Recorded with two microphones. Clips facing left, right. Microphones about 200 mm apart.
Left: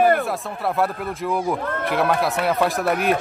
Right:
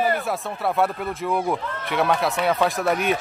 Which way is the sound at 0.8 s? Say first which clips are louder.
Even; centre (ahead or behind).